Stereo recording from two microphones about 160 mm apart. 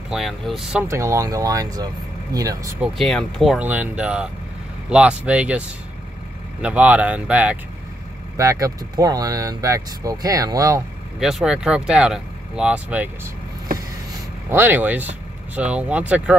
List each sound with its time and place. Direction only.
0.1 s speech: centre (ahead or behind)
0.8 s speech: 20° right (ahead or behind)
2.8 s speech: centre (ahead or behind)
3.6 s speech: 10° right (ahead or behind)
8.4 s speech: 20° right (ahead or behind)
11.1 s speech: 5° right (ahead or behind)
14.5 s speech: 15° right (ahead or behind)